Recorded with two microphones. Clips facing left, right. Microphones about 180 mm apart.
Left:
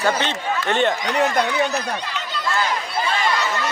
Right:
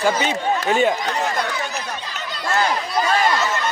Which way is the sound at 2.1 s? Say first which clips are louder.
Right 5 dB; 45° right (ahead or behind).